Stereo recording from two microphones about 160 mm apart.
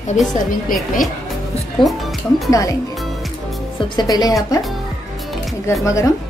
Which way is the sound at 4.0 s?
25° left (ahead or behind).